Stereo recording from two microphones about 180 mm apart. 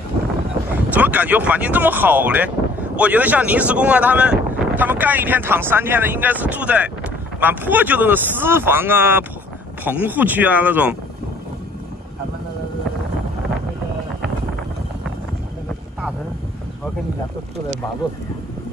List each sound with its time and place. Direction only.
0.9 s speech: 10° right (ahead or behind)